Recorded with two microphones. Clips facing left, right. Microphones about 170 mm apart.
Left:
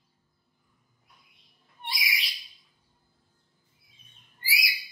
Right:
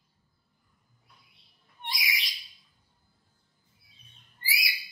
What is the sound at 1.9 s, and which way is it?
Bird, 5° left (ahead or behind).